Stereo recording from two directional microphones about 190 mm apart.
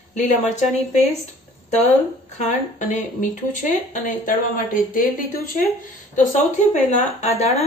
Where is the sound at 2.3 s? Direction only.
40° left (ahead or behind).